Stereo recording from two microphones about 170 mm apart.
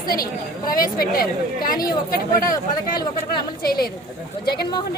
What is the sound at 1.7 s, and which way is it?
Speech, 20° left (ahead or behind).